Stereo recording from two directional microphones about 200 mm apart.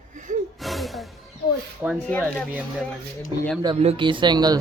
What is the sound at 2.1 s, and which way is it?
Speech, 10° left (ahead or behind).